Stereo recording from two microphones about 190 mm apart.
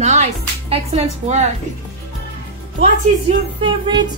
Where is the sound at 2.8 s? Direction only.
30° right (ahead or behind).